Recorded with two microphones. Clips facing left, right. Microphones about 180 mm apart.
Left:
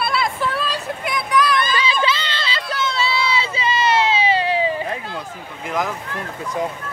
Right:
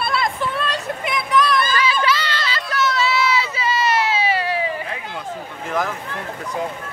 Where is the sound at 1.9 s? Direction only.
25° left (ahead or behind).